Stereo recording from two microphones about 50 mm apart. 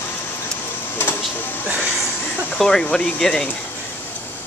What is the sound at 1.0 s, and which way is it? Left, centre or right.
Printer, left.